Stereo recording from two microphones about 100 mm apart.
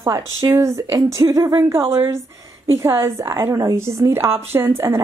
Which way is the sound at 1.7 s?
25° right (ahead or behind).